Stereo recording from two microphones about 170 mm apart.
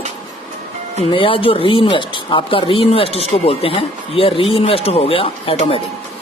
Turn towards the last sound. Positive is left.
turn(degrees=35)  # may be behind; listen again after turning